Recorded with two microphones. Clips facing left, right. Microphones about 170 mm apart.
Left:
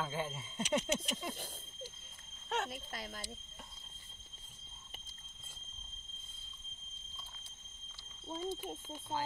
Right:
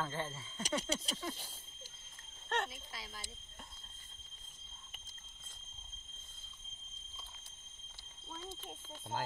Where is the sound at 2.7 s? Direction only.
50° left (ahead or behind).